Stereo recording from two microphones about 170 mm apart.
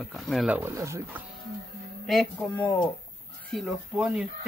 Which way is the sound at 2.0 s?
Centre (ahead or behind).